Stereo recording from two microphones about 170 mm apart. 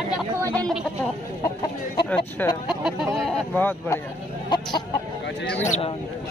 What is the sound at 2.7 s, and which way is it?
Speech, 5° right (ahead or behind).